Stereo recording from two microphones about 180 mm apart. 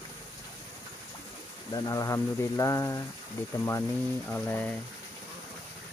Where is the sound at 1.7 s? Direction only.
20° left (ahead or behind).